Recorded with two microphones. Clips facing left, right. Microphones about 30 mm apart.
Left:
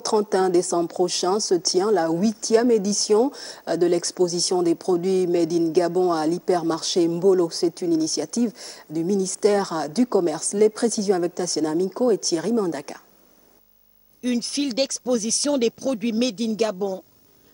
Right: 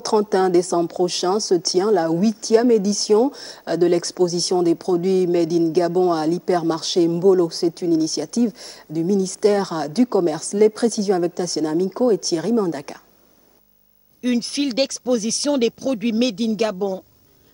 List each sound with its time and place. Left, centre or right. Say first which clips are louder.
0.0 s speech: right 3 dB; centre
14.2 s speech: right 3 dB; centre